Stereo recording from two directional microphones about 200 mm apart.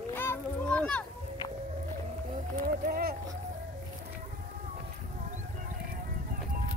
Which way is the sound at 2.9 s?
50° right (ahead or behind).